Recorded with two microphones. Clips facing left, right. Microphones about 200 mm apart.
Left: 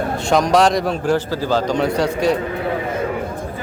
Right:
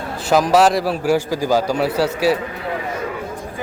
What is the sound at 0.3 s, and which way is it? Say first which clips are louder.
A man's voice: right 1 dB; 5° right (ahead or behind).